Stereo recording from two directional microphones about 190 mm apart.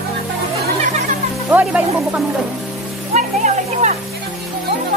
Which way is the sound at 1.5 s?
5° right (ahead or behind).